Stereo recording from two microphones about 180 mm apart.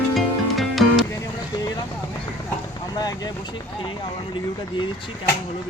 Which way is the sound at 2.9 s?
20° left (ahead or behind).